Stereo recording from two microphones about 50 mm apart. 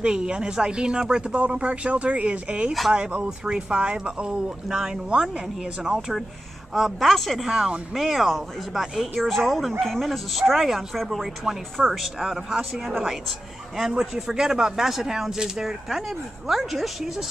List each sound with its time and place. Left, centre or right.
0.0 s a man's voice: centre